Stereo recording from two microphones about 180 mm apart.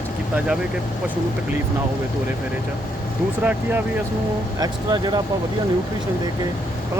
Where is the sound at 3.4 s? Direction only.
10° right (ahead or behind).